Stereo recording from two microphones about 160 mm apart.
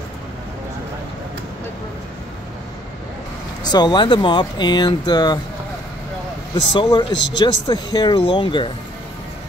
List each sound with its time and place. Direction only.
3.6 s speech: 25° left (ahead or behind)
6.5 s speech: 30° left (ahead or behind)